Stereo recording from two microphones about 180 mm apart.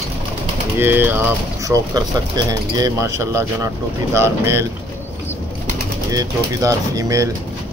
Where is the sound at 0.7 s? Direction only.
10° right (ahead or behind).